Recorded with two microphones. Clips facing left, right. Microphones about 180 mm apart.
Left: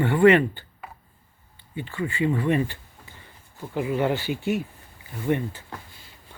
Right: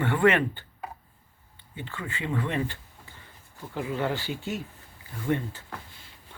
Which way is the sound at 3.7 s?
15° left (ahead or behind).